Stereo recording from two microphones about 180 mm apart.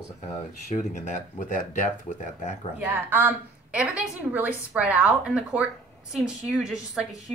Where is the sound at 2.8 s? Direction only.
10° right (ahead or behind).